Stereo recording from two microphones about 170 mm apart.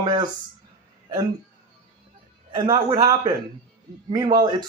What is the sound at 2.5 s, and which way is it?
Speech, 25° right (ahead or behind).